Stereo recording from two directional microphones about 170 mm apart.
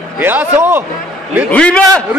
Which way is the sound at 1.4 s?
5° left (ahead or behind).